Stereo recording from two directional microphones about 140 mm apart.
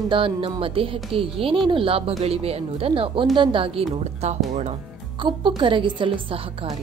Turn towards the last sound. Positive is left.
turn(degrees=-40)  # may be behind; listen again after turning